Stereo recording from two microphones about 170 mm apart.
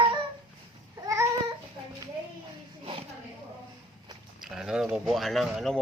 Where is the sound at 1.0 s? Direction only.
15° right (ahead or behind).